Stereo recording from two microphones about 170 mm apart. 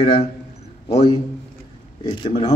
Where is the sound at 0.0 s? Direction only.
30° left (ahead or behind).